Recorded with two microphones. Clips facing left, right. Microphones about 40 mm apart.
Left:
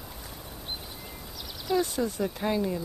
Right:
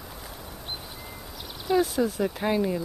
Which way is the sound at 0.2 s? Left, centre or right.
Centre.